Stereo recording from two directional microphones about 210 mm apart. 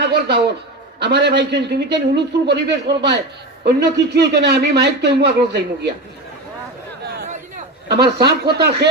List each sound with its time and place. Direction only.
0.9 s a man's voice: 55° right (ahead or behind)
7.9 s speech: 50° right (ahead or behind)